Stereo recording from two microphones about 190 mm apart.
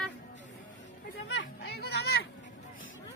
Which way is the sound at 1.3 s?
65° left (ahead or behind).